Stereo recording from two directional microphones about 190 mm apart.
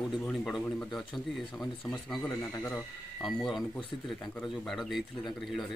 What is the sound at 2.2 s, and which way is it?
Speech, 15° left (ahead or behind).